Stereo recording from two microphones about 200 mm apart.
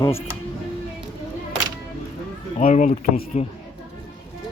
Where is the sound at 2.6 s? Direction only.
40° left (ahead or behind).